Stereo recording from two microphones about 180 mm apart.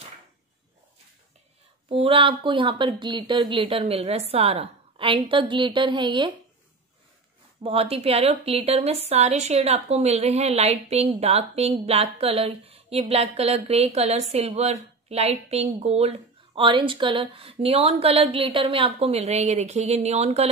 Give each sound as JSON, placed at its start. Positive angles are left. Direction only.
{"t": 1.9, "sound": "speech", "side_deg": -30}
{"t": 7.6, "sound": "a woman's voice", "side_deg": -30}